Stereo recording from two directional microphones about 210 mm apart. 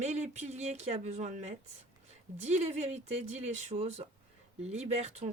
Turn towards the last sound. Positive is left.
turn(degrees=-30)  # may be behind; listen again after turning